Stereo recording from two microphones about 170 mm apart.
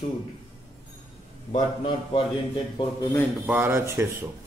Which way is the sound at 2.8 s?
25° left (ahead or behind).